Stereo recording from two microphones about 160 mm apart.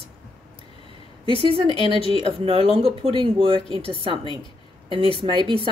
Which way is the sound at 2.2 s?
35° right (ahead or behind).